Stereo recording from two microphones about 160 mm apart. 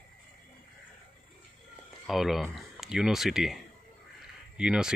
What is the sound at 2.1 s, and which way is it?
Speech, centre (ahead or behind).